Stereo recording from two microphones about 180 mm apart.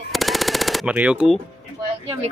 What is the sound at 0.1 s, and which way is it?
Machine gun, centre (ahead or behind).